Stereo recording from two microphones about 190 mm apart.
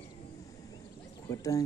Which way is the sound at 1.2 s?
15° left (ahead or behind).